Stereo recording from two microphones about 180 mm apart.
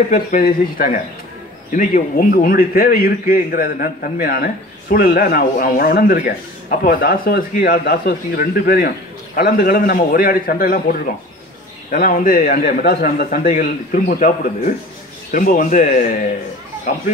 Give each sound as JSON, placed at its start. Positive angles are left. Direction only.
{"t": 0.1, "sound": "a man's voice", "side_deg": 50}